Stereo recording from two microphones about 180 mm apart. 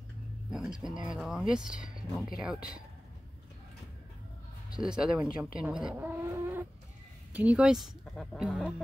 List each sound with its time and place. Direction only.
0.5 s speech: 5° right (ahead or behind)
4.7 s speech: 5° right (ahead or behind)